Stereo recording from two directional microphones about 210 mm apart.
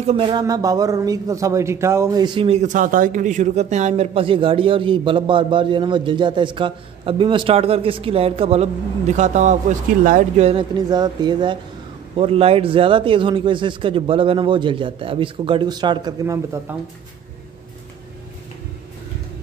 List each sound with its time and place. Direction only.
0.0 s a man's voice: 25° right (ahead or behind)